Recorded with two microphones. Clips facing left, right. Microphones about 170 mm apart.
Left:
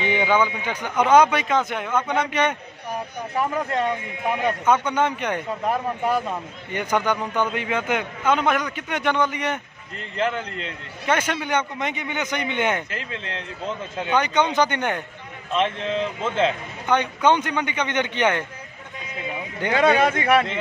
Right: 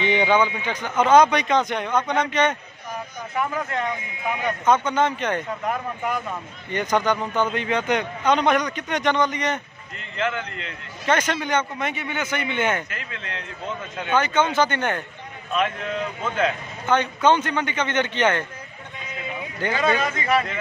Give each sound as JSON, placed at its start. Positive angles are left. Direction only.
{"t": 0.0, "sound": "a man's voice", "side_deg": 10}
{"t": 3.3, "sound": "a man's voice", "side_deg": 35}
{"t": 4.6, "sound": "a man's voice", "side_deg": 10}
{"t": 5.7, "sound": "a man's voice", "side_deg": 35}
{"t": 6.7, "sound": "a man's voice", "side_deg": 10}
{"t": 9.9, "sound": "a man's voice", "side_deg": 35}
{"t": 11.1, "sound": "a man's voice", "side_deg": 10}
{"t": 12.9, "sound": "a man's voice", "side_deg": 30}
{"t": 13.9, "sound": "a man's voice", "side_deg": 20}
{"t": 15.5, "sound": "a man's voice", "side_deg": 25}
{"t": 16.8, "sound": "a man's voice", "side_deg": 15}
{"t": 19.7, "sound": "speech", "side_deg": 65}